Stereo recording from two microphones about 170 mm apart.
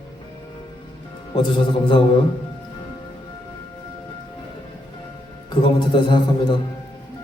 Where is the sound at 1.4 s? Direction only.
30° left (ahead or behind).